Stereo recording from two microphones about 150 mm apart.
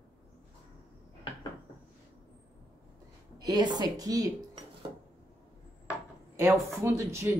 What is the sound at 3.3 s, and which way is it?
Speech, 25° right (ahead or behind).